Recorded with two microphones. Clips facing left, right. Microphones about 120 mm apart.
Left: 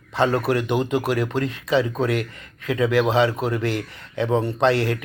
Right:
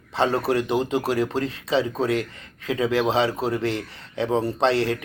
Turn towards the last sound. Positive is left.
turn(degrees=-30)  # may be behind; listen again after turning